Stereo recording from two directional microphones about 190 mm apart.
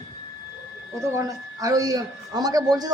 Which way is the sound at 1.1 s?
15° right (ahead or behind).